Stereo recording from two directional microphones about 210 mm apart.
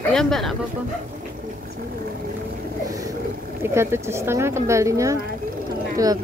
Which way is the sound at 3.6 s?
10° right (ahead or behind).